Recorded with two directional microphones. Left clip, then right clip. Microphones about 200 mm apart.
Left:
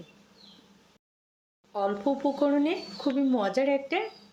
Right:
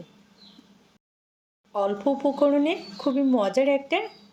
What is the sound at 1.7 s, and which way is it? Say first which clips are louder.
Speech: right 3 dB; 15° right (ahead or behind).